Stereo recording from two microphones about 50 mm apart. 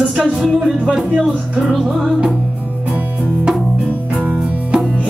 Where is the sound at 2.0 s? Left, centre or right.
Centre.